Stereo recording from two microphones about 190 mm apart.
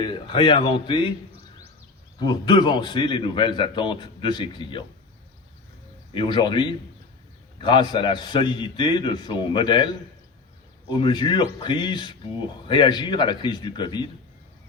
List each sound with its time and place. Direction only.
0.0 s a man's voice: 25° left (ahead or behind)
2.1 s a man's voice: 20° left (ahead or behind)
6.1 s a man's voice: 25° left (ahead or behind)